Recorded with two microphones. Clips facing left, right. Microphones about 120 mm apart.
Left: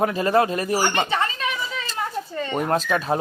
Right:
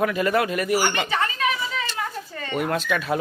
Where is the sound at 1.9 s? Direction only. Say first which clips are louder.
Left 3 dB; 25° left (ahead or behind).